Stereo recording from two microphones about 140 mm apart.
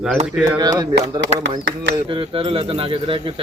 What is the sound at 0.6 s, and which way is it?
Speech, 30° right (ahead or behind).